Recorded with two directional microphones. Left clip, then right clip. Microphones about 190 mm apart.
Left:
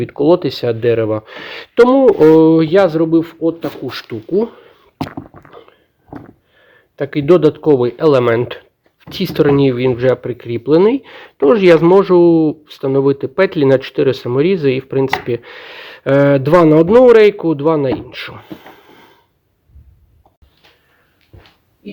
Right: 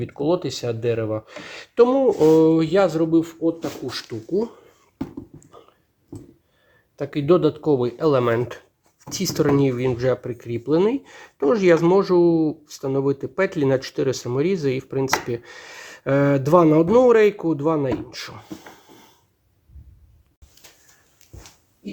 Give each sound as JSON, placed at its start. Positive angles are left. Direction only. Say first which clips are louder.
{"t": 0.0, "sound": "speech", "louder": "left 10 dB", "side_deg": 45}
{"t": 5.5, "sound": "a sound", "louder": "left 9 dB", "side_deg": 35}
{"t": 6.9, "sound": "speech", "louder": "left 7 dB", "side_deg": 35}